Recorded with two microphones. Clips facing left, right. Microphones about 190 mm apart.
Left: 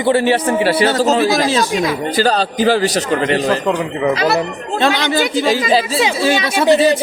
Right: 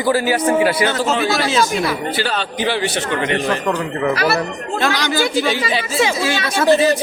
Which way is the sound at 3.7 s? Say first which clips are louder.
Left 2 dB; 20° left (ahead or behind).